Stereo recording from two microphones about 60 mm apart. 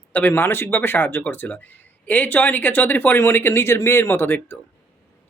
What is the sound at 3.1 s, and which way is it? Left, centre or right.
Speech, left.